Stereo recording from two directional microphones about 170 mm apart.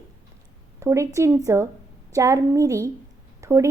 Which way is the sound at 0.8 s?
15° right (ahead or behind).